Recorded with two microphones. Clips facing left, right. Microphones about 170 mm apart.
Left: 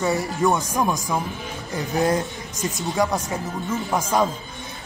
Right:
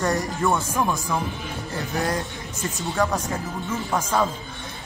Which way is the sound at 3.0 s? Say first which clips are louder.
Left 1 dB; 10° left (ahead or behind).